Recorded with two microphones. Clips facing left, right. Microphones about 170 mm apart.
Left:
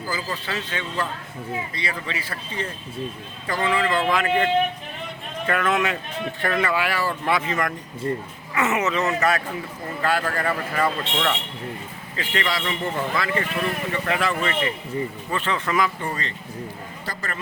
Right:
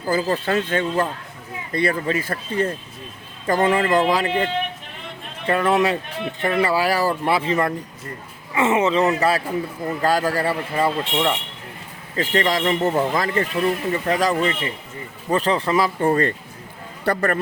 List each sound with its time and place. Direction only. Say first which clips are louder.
0.1 s speech: right 10 dB; 50° right (ahead or behind); by 4.4 s 35° right (ahead or behind)
5.5 s speech: right 5 dB; 30° right (ahead or behind)
8.0 s speech: left 10 dB; 25° left (ahead or behind)
8.5 s speech: right 5 dB; 30° right (ahead or behind)
12.1 s speech: right 6 dB; 40° right (ahead or behind)
16.0 s speech: right 11 dB; 55° right (ahead or behind)